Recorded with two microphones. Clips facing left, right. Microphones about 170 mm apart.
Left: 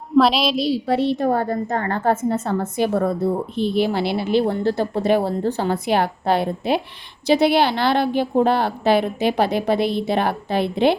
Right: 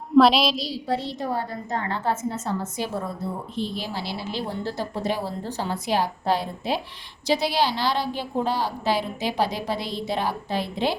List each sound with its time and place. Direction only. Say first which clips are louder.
0.2 s a woman's voice: even; centre (ahead or behind)
0.5 s a woman's voice: left 8 dB; 60° left (ahead or behind)